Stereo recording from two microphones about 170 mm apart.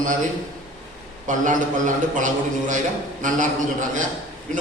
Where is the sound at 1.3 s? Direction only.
50° right (ahead or behind).